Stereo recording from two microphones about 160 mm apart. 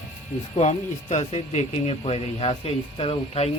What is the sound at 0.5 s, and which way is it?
Speech, 40° left (ahead or behind).